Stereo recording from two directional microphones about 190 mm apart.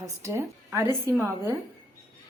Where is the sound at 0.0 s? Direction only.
15° right (ahead or behind).